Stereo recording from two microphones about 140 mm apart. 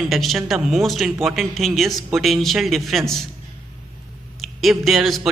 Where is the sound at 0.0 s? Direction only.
Centre (ahead or behind).